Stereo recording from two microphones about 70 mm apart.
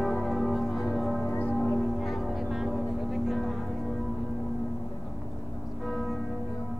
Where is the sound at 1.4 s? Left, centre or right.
Left.